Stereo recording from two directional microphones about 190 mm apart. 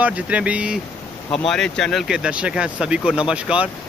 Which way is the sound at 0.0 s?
5° right (ahead or behind).